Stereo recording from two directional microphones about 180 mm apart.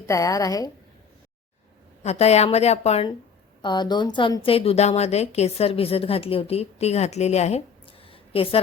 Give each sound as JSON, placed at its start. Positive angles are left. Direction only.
{"t": 0.1, "sound": "a woman's voice", "side_deg": 20}
{"t": 2.0, "sound": "a woman's voice", "side_deg": 35}
{"t": 3.6, "sound": "a woman's voice", "side_deg": 25}